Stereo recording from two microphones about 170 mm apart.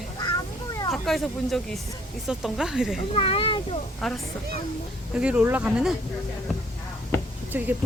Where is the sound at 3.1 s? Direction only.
35° left (ahead or behind).